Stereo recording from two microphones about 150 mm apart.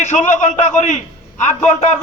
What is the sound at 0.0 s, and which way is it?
Speech, 55° left (ahead or behind).